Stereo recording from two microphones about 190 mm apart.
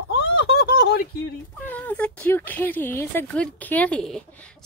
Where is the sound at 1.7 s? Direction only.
10° left (ahead or behind).